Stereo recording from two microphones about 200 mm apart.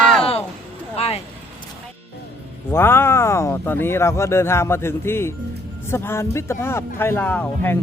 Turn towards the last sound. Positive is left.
turn(degrees=10)  # may be behind; listen again after turning